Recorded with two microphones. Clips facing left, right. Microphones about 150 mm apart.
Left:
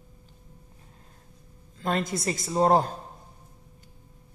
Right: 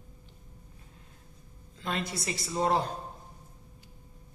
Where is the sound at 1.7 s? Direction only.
45° left (ahead or behind).